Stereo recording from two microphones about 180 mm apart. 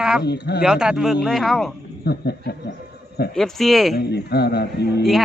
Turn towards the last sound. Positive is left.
turn(degrees=65)  # may be behind; listen again after turning